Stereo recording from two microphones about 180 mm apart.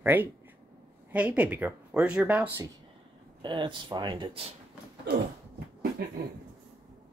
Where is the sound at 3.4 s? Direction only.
25° right (ahead or behind).